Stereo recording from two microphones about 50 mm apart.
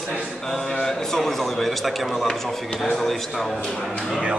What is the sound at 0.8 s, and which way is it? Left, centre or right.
A man's voice, centre.